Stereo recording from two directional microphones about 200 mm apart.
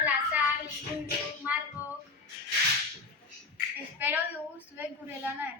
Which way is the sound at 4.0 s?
10° right (ahead or behind).